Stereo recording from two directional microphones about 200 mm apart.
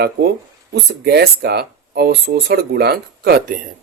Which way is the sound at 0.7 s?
55° right (ahead or behind).